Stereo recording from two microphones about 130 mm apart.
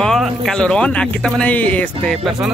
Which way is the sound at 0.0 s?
5° left (ahead or behind).